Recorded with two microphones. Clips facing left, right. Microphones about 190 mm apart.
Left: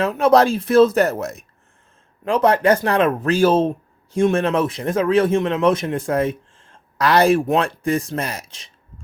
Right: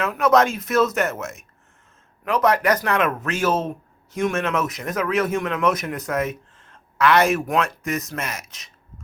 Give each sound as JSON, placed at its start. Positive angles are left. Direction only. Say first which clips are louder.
{"t": 0.0, "sound": "a man's voice", "louder": "left 3 dB", "side_deg": 30}